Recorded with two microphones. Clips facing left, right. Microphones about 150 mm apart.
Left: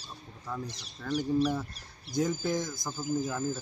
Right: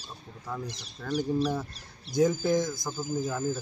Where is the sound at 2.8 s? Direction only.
5° right (ahead or behind).